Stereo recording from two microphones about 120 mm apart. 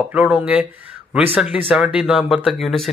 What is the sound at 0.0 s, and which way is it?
Speech, 10° right (ahead or behind).